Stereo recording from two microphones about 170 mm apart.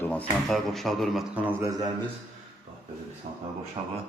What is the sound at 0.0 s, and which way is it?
A man's voice, 10° left (ahead or behind).